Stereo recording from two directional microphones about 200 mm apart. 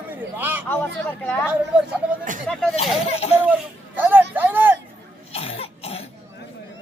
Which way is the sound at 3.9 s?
10° right (ahead or behind).